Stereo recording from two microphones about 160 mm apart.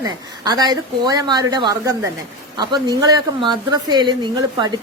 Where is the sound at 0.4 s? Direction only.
25° right (ahead or behind).